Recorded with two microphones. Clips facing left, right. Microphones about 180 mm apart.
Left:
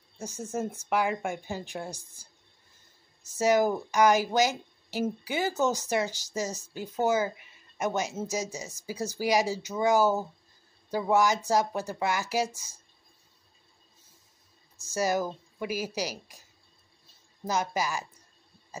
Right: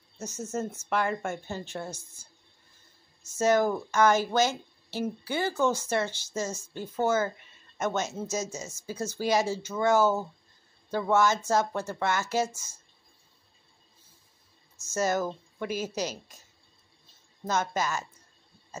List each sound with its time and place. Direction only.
0.5 s speech: 15° left (ahead or behind)
3.3 s speech: 15° left (ahead or behind)
12.4 s speech: 35° left (ahead or behind)
15.0 s speech: 10° left (ahead or behind)
17.5 s speech: 10° left (ahead or behind)